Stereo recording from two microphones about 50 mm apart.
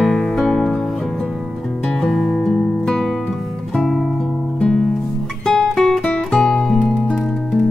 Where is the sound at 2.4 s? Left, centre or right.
Centre.